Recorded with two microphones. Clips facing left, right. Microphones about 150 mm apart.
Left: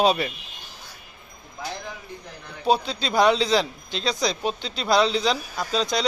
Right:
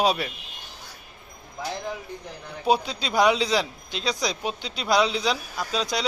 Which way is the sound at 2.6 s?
15° right (ahead or behind).